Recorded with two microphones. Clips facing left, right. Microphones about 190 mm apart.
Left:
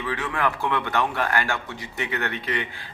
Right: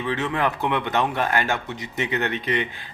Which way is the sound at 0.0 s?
20° right (ahead or behind).